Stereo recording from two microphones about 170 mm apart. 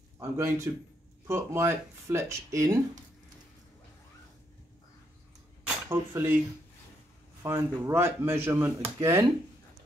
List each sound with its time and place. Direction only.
0.2 s speech: 15° right (ahead or behind)
5.9 s speech: 15° right (ahead or behind)
7.4 s speech: 15° right (ahead or behind)